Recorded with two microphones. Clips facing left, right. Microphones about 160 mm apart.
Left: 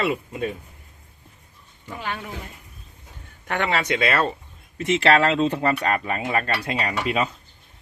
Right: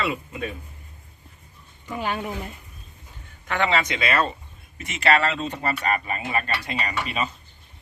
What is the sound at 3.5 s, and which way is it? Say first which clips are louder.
Speech: even; 55° left (ahead or behind).